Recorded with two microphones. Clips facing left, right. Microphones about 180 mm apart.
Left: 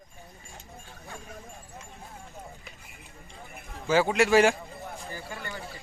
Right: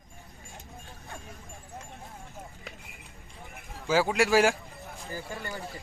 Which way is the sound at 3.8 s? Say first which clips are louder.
Left 2 dB; 5° right (ahead or behind).